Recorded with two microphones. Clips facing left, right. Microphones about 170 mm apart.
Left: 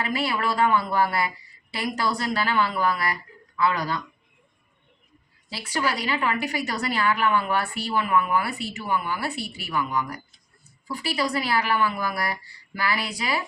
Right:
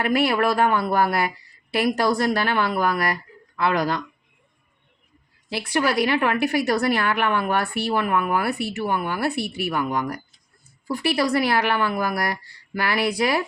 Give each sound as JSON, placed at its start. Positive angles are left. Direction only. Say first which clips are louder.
{"t": 0.0, "sound": "a woman's voice", "louder": "right 6 dB", "side_deg": -65}
{"t": 5.5, "sound": "a woman's voice", "louder": "right 5 dB", "side_deg": -65}